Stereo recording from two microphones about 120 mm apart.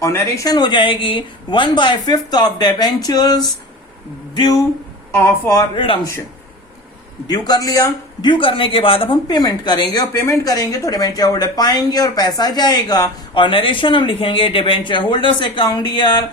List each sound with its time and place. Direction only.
0.0 s speech: 25° left (ahead or behind)
5.1 s speech: 20° left (ahead or behind)
5.5 s speech: 45° left (ahead or behind)
7.3 s speech: 35° left (ahead or behind); by 9.1 s 50° left (ahead or behind)
9.2 s speech: 35° left (ahead or behind)